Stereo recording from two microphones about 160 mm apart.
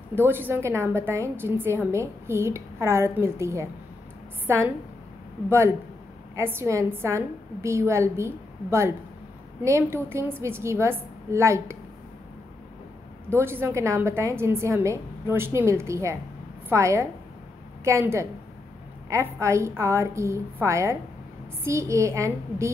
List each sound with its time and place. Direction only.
0.1 s a woman's voice: 15° right (ahead or behind)
13.3 s a woman's voice: 15° right (ahead or behind)